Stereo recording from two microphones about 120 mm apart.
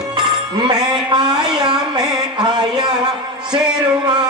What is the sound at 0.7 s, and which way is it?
Music, 35° right (ahead or behind).